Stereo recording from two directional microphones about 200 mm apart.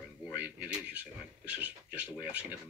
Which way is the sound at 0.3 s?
10° right (ahead or behind).